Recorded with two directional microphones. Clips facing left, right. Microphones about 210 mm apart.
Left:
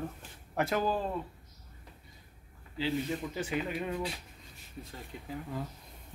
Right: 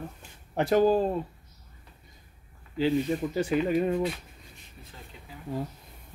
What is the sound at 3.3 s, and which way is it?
Speech, 40° right (ahead or behind).